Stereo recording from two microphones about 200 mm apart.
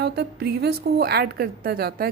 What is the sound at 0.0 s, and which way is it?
A woman's voice, 55° right (ahead or behind).